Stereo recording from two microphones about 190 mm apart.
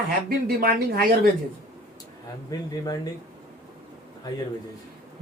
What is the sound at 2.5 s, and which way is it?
Speech, 20° left (ahead or behind).